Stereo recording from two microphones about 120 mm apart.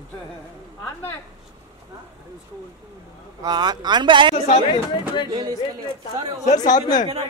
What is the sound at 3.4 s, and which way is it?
Speech, 35° right (ahead or behind).